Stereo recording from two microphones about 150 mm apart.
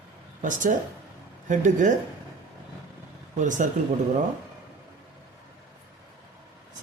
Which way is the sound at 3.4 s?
55° right (ahead or behind).